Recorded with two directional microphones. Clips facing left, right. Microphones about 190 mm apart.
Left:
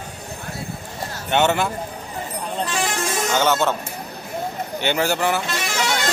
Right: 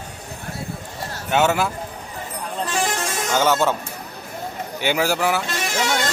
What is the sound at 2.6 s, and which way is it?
Vehicle, 45° right (ahead or behind).